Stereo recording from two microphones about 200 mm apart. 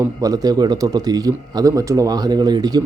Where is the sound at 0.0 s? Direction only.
15° right (ahead or behind).